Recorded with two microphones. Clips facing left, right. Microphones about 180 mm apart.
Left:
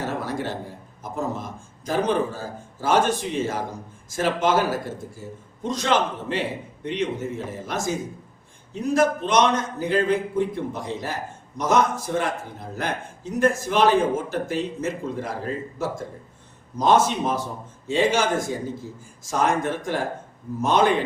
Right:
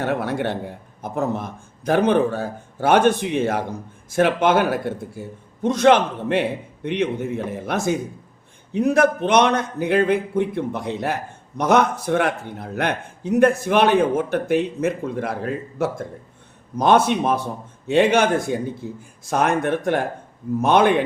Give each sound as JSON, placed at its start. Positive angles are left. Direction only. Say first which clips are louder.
{"t": 0.0, "sound": "a man's voice", "louder": "right 5 dB", "side_deg": -65}